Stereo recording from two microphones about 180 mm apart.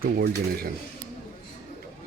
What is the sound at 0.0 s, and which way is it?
Speech, 55° right (ahead or behind).